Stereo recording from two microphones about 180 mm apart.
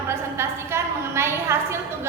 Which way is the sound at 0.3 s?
15° right (ahead or behind).